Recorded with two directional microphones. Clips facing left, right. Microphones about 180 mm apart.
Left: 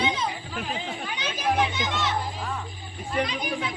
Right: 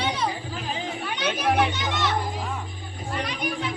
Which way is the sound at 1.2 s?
65° right (ahead or behind).